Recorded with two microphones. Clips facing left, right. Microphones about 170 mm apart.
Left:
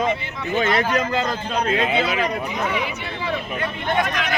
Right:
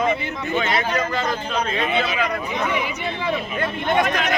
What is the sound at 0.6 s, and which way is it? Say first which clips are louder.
Speech: left 3 dB; 50° left (ahead or behind).